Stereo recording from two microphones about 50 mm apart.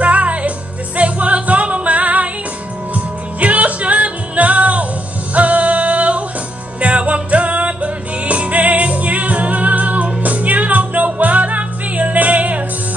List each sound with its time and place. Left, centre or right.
0.0 s music: right